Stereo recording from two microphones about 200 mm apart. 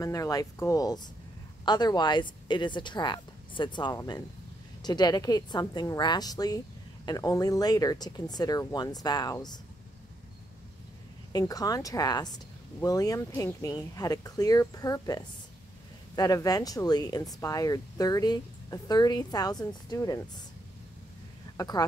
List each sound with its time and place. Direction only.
0.0 s speech: 15° left (ahead or behind)
11.3 s speech: 20° left (ahead or behind)
21.5 s speech: 20° left (ahead or behind)